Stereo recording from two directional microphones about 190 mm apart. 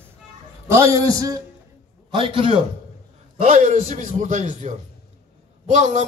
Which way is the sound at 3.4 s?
40° right (ahead or behind).